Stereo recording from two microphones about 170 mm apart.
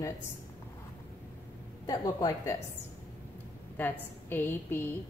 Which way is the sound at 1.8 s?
25° left (ahead or behind).